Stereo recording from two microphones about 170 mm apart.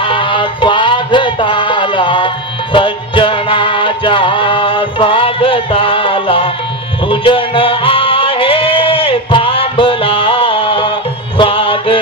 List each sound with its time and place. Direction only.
0.0 s music: 30° left (ahead or behind)